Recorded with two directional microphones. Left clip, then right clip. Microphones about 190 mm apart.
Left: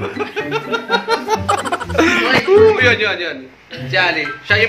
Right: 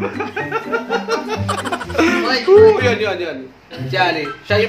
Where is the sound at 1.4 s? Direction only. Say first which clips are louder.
Left 4 dB; centre (ahead or behind).